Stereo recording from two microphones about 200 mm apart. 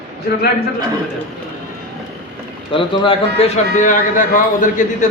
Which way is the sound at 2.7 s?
25° left (ahead or behind).